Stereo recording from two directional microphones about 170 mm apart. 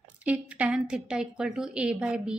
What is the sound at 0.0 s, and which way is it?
A woman's voice, 10° right (ahead or behind).